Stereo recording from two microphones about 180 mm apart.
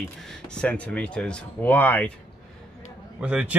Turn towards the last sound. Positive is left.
turn(degrees=-5)  # may be behind; listen again after turning